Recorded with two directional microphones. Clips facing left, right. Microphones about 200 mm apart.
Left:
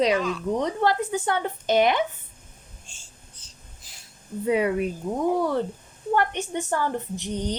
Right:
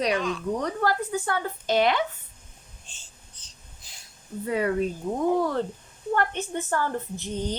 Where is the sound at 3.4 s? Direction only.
10° left (ahead or behind).